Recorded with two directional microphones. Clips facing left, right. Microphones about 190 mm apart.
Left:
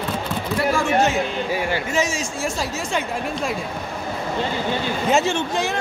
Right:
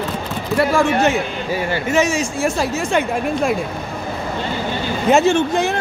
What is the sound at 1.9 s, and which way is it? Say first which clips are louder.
A woman's voice: right 6 dB; 65° right (ahead or behind).